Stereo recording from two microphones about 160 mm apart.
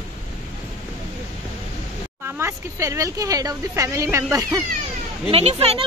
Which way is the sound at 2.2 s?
15° right (ahead or behind).